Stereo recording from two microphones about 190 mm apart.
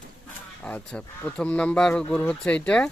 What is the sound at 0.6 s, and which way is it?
Speech, 5° left (ahead or behind).